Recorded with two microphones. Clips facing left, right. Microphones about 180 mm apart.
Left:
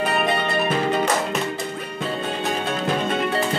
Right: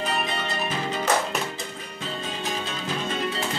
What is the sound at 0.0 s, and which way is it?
Music, 60° left (ahead or behind).